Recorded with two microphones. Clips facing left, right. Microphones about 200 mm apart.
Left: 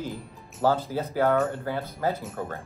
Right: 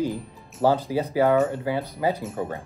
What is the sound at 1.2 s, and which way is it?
Speech, centre (ahead or behind).